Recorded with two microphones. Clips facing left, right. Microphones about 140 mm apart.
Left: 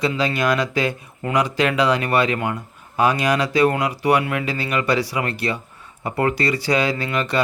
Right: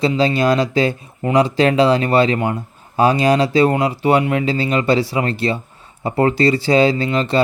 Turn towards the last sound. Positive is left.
turn(degrees=-30)  # may be behind; listen again after turning